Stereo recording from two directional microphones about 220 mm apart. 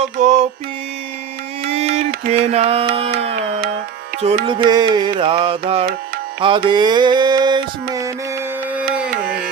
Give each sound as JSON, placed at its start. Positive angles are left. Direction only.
{"t": 0.0, "sound": "mantra", "side_deg": -30}
{"t": 1.7, "sound": "music", "side_deg": -30}
{"t": 2.0, "sound": "music", "side_deg": -45}
{"t": 2.4, "sound": "mantra", "side_deg": -30}
{"t": 4.4, "sound": "mantra", "side_deg": -20}